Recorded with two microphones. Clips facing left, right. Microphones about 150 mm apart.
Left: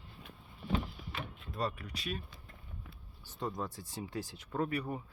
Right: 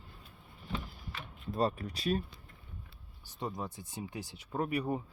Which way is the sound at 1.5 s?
35° right (ahead or behind).